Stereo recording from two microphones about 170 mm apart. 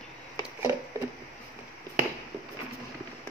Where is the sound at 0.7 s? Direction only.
15° right (ahead or behind).